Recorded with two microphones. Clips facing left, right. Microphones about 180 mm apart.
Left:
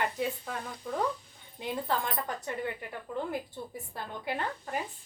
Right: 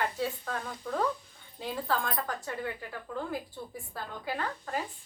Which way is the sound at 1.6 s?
20° left (ahead or behind).